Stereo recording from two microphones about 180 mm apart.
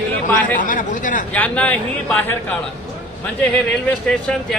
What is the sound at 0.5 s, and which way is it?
Speech, 50° left (ahead or behind).